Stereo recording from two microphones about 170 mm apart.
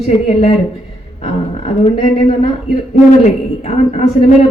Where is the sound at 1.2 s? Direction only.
40° left (ahead or behind).